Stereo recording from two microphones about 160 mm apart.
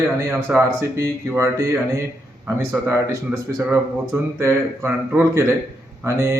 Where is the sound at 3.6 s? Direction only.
15° right (ahead or behind).